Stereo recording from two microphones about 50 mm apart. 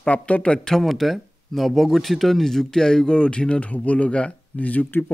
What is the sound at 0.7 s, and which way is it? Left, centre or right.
Speech, centre.